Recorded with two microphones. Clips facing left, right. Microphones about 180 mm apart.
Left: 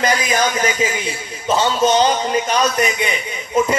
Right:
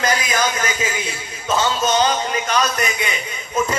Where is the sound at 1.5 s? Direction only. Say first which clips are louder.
Left 3 dB; 30° left (ahead or behind).